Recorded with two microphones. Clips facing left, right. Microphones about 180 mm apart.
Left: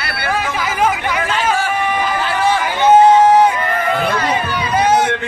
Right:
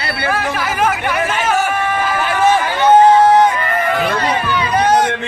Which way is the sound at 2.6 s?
10° left (ahead or behind).